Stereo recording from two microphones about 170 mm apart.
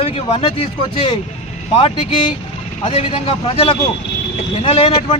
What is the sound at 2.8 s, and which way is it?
Speech, 35° left (ahead or behind).